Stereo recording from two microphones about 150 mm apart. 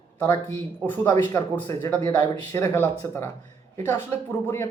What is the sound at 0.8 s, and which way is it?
A woman's voice, 15° left (ahead or behind).